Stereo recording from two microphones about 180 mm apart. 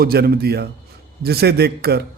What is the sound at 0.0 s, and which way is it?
A man's voice, 60° right (ahead or behind).